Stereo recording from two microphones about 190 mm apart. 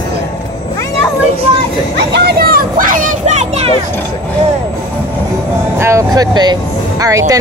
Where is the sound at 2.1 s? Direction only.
55° right (ahead or behind); by 3.7 s 35° right (ahead or behind).